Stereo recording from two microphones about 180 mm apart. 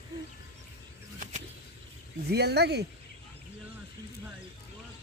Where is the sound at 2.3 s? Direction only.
65° right (ahead or behind).